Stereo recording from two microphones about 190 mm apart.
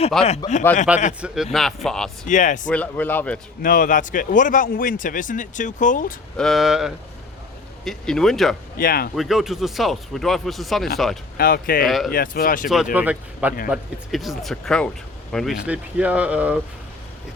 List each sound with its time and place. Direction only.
0.3 s speech: 40° left (ahead or behind)
0.9 s speech: 5° right (ahead or behind)
2.2 s speech: 40° left (ahead or behind)
2.6 s speech: 5° left (ahead or behind)
3.6 s speech: 45° left (ahead or behind)
6.3 s speech: centre (ahead or behind)
8.8 s speech: 50° left (ahead or behind)
9.1 s speech: centre (ahead or behind)
11.3 s speech: 50° left (ahead or behind)
11.9 s speech: centre (ahead or behind)
12.1 s speech: 50° left (ahead or behind)
12.6 s speech: centre (ahead or behind)